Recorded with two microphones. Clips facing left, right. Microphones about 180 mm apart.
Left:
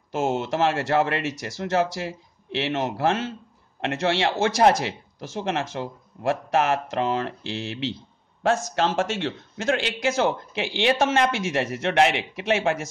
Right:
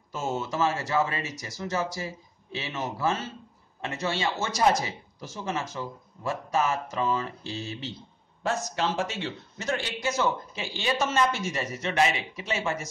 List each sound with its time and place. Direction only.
0.1 s speech: 75° left (ahead or behind)
8.7 s speech: 90° left; by 12.7 s 75° left (ahead or behind)